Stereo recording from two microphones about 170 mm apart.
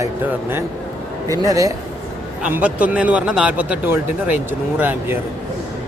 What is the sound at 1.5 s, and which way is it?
Speech, 20° right (ahead or behind).